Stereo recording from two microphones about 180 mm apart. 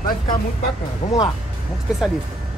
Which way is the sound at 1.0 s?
35° left (ahead or behind).